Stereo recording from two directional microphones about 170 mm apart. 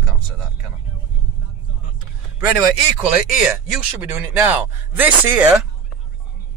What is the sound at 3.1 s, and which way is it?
Speech, 10° right (ahead or behind).